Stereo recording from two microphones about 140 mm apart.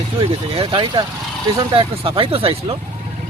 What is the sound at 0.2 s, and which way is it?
Speech, 40° right (ahead or behind).